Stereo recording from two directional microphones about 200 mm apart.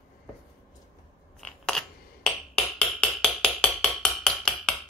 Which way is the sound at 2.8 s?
5° left (ahead or behind).